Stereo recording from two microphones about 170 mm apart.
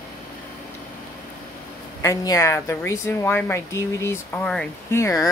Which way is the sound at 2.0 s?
20° left (ahead or behind).